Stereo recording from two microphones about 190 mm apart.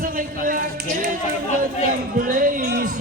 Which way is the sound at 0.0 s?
45° right (ahead or behind).